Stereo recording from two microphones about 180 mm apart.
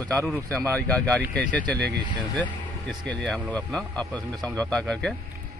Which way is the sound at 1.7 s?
65° right (ahead or behind).